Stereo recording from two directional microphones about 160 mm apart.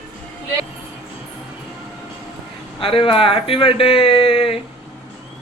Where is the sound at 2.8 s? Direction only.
35° left (ahead or behind).